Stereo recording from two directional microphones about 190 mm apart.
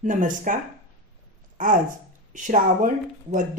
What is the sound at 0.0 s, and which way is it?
Speech, 45° right (ahead or behind).